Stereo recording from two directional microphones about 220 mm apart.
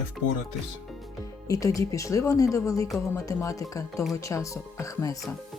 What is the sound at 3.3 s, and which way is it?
Speech, 15° left (ahead or behind).